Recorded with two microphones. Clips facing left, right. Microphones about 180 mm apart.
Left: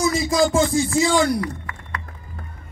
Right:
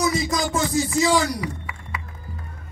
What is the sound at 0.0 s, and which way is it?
Music, 25° left (ahead or behind).